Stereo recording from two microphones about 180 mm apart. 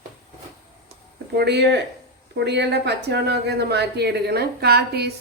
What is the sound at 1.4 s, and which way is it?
Speech, 70° right (ahead or behind).